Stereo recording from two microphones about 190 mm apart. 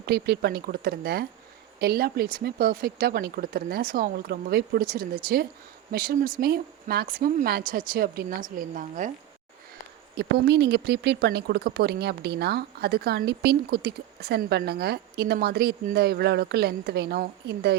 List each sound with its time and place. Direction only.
0.0 s speech: 55° right (ahead or behind)
10.2 s speech: 60° right (ahead or behind)